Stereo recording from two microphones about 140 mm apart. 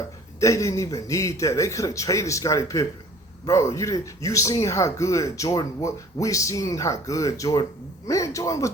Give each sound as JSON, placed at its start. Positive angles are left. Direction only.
{"t": 0.3, "sound": "speech", "side_deg": 20}